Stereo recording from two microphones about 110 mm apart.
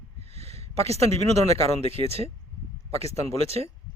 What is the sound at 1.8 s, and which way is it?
Speech, 65° right (ahead or behind).